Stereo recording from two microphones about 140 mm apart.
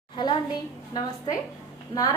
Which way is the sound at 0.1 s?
35° left (ahead or behind).